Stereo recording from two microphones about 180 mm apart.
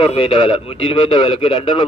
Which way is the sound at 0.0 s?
30° left (ahead or behind).